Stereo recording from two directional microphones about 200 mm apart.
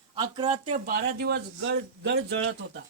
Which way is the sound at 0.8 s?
45° right (ahead or behind).